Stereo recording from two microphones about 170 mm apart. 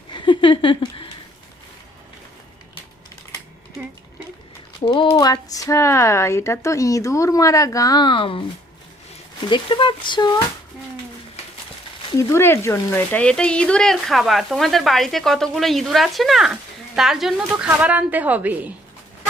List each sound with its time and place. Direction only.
0.1 s a sound: 30° left (ahead or behind)
4.9 s speech: 25° left (ahead or behind)
9.5 s speech: 30° left (ahead or behind)
12.1 s speech: 15° left (ahead or behind); by 18.7 s 10° right (ahead or behind)